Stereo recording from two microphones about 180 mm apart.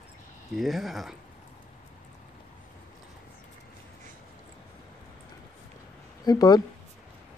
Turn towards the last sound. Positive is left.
turn(degrees=20)  # may be behind; listen again after turning